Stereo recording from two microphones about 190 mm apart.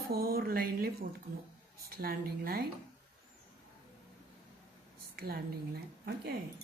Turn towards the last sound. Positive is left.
turn(degrees=-55)  # may be behind; listen again after turning